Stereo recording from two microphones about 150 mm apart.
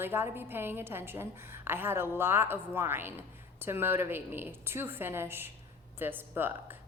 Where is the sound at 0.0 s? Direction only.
15° right (ahead or behind).